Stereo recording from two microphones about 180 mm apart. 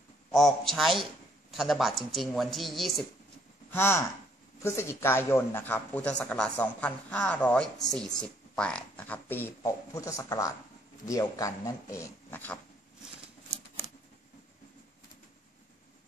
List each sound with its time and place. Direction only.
0.3 s speech: centre (ahead or behind)
3.7 s speech: 15° left (ahead or behind)